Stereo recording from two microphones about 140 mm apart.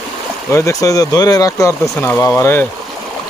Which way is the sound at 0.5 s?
20° left (ahead or behind).